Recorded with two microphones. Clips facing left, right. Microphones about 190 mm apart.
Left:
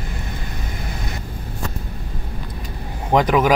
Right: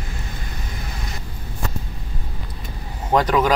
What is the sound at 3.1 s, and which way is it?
Speech, 15° left (ahead or behind).